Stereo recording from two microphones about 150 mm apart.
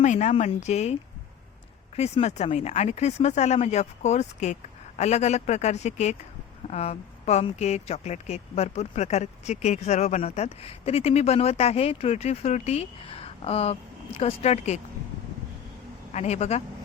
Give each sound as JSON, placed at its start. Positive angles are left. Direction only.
{"t": 0.0, "sound": "a woman's voice", "side_deg": 50}
{"t": 2.0, "sound": "a woman's voice", "side_deg": 45}
{"t": 16.1, "sound": "a woman's voice", "side_deg": 45}